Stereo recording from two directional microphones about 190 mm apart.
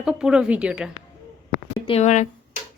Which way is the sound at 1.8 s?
35° left (ahead or behind).